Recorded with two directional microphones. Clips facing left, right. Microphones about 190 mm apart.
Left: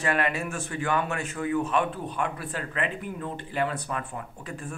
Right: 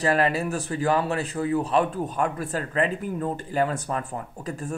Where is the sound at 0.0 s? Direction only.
35° right (ahead or behind).